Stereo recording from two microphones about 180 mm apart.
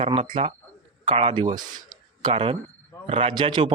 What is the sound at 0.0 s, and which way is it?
Speech, 30° right (ahead or behind).